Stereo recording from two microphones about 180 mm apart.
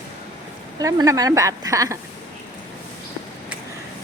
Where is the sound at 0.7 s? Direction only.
20° right (ahead or behind).